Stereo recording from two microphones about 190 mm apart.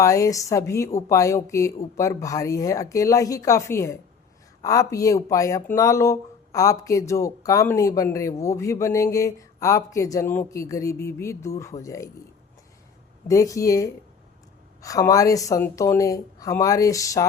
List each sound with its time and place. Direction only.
0.0 s speech: 15° left (ahead or behind)
13.2 s speech: 15° left (ahead or behind)